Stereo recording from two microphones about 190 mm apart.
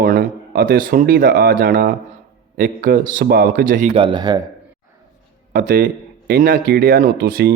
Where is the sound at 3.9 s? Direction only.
25° right (ahead or behind).